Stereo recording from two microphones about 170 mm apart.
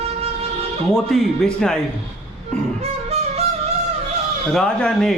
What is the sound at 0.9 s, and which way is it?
Speech, centre (ahead or behind).